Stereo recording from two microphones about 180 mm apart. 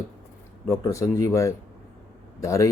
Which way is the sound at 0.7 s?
15° left (ahead or behind).